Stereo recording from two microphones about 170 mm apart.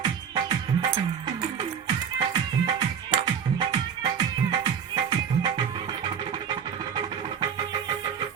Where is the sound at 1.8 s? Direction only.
25° right (ahead or behind).